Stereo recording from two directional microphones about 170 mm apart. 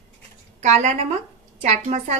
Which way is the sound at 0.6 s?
45° right (ahead or behind).